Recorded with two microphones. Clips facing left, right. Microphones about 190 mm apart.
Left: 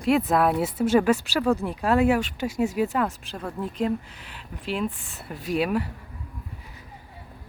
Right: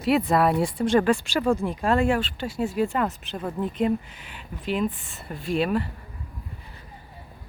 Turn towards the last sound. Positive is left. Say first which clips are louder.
# even
turn(degrees=10)  # may be behind; listen again after turning